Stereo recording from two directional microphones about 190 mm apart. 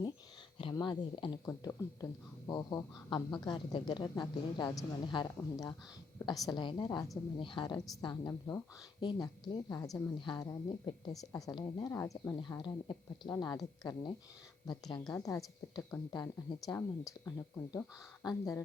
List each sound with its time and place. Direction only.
0.6 s a woman's voice: 25° left (ahead or behind)
11.9 s a woman's voice: 10° left (ahead or behind)